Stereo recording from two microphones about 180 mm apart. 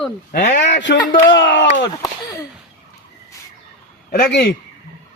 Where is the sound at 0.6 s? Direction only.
75° left (ahead or behind).